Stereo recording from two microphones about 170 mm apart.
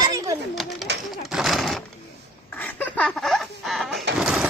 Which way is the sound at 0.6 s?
Centre (ahead or behind).